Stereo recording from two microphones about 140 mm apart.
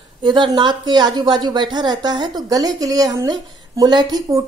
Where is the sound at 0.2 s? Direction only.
35° right (ahead or behind).